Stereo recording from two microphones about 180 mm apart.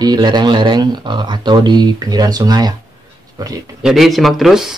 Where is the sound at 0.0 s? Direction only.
25° right (ahead or behind).